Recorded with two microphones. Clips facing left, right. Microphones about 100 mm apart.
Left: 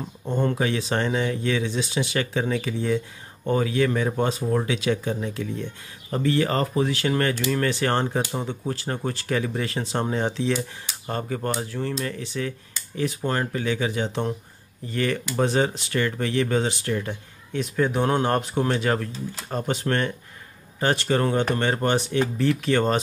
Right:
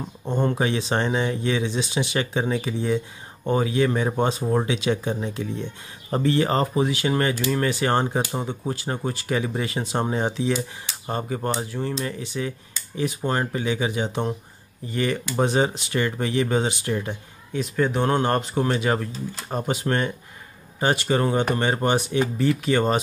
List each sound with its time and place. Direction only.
0.2 s speech: 20° right (ahead or behind)
17.5 s speech: centre (ahead or behind)